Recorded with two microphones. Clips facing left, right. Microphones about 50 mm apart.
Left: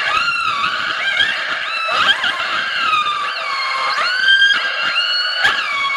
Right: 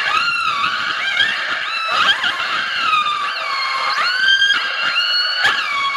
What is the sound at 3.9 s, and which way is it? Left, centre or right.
Emergency vehicle, centre.